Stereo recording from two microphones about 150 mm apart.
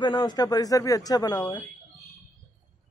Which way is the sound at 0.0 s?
30° left (ahead or behind).